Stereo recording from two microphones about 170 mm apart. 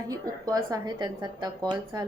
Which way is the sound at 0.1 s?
20° right (ahead or behind).